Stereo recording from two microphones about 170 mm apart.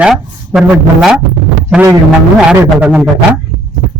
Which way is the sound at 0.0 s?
5° right (ahead or behind).